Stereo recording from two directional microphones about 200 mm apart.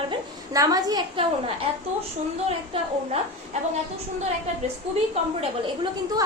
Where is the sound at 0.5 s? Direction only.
15° right (ahead or behind).